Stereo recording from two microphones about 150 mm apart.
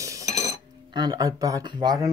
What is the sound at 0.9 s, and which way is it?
Speech, 25° right (ahead or behind).